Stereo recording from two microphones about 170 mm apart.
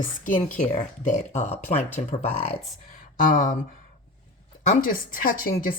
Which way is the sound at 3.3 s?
55° left (ahead or behind).